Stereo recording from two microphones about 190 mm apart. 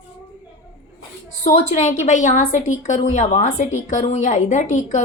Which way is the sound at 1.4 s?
40° left (ahead or behind).